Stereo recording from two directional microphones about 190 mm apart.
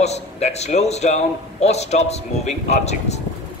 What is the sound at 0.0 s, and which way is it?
A man's voice, 35° left (ahead or behind).